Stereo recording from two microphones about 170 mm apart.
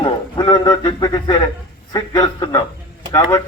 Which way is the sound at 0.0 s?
25° left (ahead or behind).